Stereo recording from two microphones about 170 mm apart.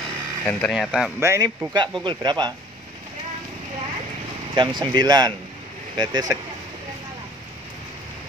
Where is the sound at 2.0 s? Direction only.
25° right (ahead or behind).